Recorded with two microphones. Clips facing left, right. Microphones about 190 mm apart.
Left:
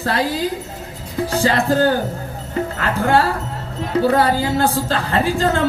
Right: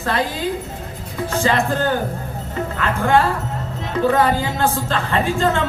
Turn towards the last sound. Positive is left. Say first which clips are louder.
# left 1 dB
turn(degrees=35)  # may be behind; listen again after turning